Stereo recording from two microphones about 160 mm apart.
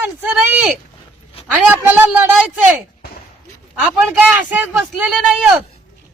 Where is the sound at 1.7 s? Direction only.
10° right (ahead or behind).